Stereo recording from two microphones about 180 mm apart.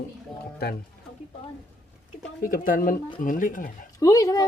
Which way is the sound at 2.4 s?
50° left (ahead or behind).